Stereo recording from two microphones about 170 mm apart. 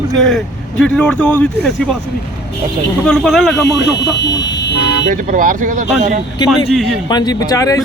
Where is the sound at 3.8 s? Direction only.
90° left.